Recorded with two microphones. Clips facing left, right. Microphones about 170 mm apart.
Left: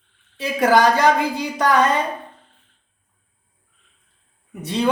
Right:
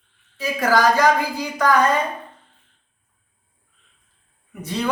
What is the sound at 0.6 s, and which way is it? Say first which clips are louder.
Speech: left 2 dB; 25° left (ahead or behind).